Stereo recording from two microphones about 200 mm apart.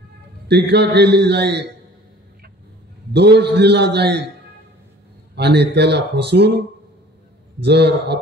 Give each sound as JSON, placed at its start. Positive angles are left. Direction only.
{"t": 0.5, "sound": "a man's voice", "side_deg": -55}
{"t": 3.1, "sound": "a man's voice", "side_deg": -55}
{"t": 5.3, "sound": "a man's voice", "side_deg": -55}
{"t": 7.6, "sound": "a man's voice", "side_deg": -55}